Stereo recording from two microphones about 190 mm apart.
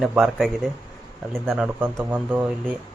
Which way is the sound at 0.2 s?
Centre (ahead or behind).